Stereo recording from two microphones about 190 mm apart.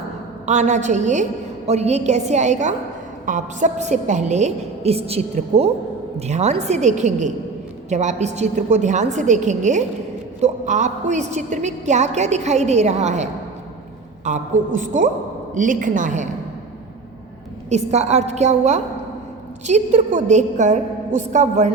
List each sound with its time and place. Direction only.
0.4 s a woman's voice: 40° right (ahead or behind)
14.3 s a woman's voice: 40° right (ahead or behind)
17.7 s a woman's voice: 35° right (ahead or behind)